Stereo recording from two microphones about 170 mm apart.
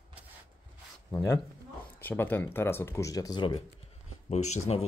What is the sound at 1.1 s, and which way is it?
Speech, 15° left (ahead or behind).